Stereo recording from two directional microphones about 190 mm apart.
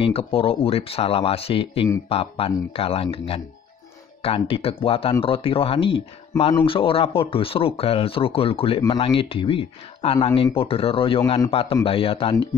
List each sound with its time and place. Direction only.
0.0 s speech: 30° left (ahead or behind)